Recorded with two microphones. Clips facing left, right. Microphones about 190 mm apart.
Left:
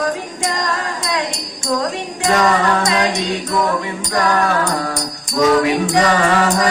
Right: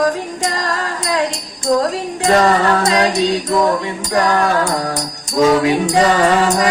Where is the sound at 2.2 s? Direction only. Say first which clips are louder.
Right 2 dB; 35° right (ahead or behind).